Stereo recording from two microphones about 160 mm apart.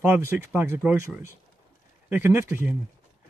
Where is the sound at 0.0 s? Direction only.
15° right (ahead or behind).